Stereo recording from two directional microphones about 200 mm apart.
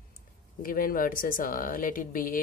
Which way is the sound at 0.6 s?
45° left (ahead or behind).